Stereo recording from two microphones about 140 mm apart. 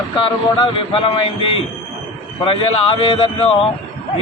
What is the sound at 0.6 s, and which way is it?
Speech, 40° left (ahead or behind).